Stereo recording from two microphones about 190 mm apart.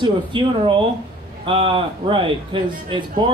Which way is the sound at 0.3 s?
25° right (ahead or behind).